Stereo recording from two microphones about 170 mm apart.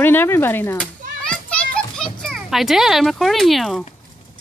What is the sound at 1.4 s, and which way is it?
Children playing, 5° left (ahead or behind).